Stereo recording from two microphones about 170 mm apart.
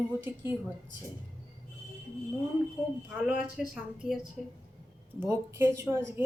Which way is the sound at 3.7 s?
Centre (ahead or behind).